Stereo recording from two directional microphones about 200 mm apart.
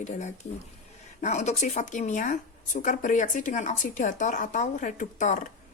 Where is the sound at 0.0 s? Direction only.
35° left (ahead or behind).